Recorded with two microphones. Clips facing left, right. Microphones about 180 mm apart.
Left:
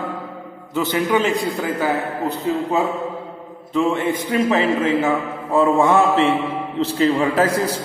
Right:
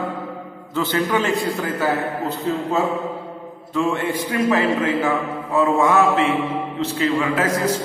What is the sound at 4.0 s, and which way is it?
A man's voice, 20° left (ahead or behind).